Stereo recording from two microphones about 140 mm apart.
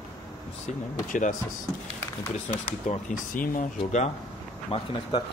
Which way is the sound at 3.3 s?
75° left (ahead or behind).